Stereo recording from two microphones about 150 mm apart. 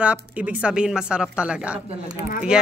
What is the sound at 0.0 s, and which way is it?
A woman's voice, 10° right (ahead or behind).